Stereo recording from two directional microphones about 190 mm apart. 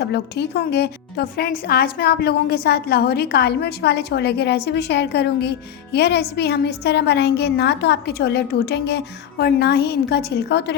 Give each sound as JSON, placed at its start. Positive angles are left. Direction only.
{"t": 0.0, "sound": "speech", "side_deg": 60}